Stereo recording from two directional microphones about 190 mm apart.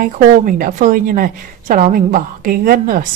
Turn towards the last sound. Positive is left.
turn(degrees=-50)  # may be behind; listen again after turning